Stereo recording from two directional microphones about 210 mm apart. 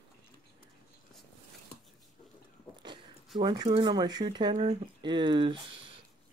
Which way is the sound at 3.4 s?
20° right (ahead or behind).